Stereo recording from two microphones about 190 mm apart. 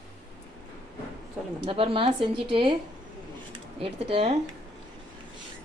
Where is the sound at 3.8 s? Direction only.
30° right (ahead or behind).